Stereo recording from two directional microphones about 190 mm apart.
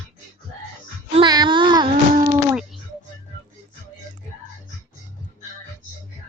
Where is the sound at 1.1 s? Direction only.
25° right (ahead or behind).